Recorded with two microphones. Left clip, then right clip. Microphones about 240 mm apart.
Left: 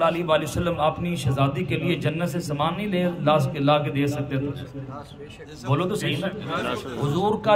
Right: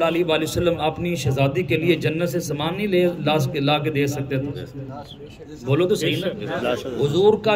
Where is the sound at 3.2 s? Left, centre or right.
Left.